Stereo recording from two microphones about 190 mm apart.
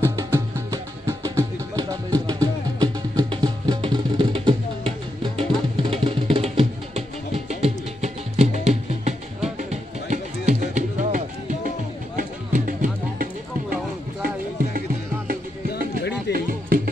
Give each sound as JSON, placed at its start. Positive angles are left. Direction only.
{"t": 0.0, "sound": "music", "side_deg": -15}
{"t": 16.3, "sound": "music", "side_deg": -45}